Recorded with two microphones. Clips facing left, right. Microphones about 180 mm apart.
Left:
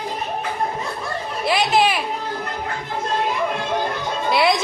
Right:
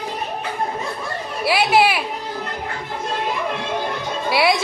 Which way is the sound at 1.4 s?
5° right (ahead or behind).